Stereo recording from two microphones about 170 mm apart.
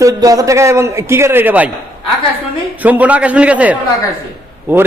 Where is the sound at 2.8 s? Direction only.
10° right (ahead or behind).